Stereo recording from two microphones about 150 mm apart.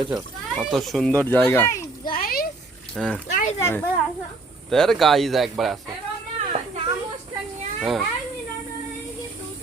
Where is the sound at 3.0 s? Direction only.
5° left (ahead or behind).